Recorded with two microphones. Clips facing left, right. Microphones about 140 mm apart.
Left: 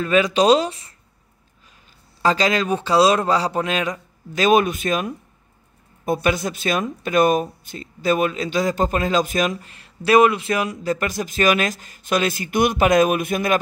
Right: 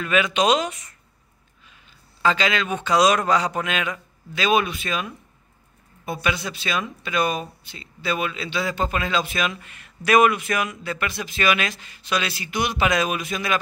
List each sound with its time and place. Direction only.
0.0 s a man's voice: 35° left (ahead or behind)
2.2 s a man's voice: 40° left (ahead or behind)